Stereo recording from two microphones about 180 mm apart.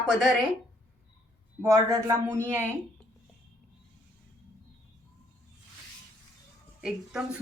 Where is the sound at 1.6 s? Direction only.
20° right (ahead or behind).